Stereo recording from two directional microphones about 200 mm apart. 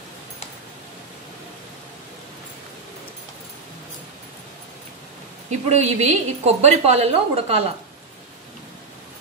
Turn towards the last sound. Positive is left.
turn(degrees=-30)  # may be behind; listen again after turning